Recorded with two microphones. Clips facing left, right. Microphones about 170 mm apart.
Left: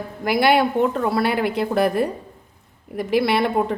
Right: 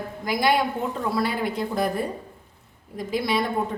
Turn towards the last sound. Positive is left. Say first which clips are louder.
# left 5 dB
turn(degrees=70)  # may be behind; listen again after turning